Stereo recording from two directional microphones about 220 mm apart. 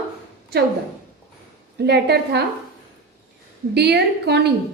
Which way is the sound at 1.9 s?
50° right (ahead or behind).